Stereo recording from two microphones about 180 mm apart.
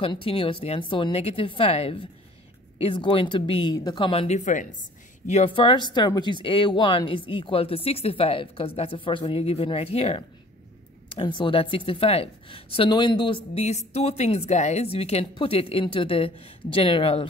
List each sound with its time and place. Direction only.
0.0 s speech: 30° left (ahead or behind)